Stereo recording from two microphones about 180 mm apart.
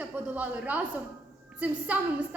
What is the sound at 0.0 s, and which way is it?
A woman's voice, 10° right (ahead or behind).